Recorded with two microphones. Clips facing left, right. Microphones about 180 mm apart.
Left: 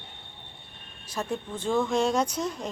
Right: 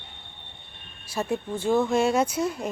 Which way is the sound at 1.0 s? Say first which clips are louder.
Right 4 dB; 10° right (ahead or behind).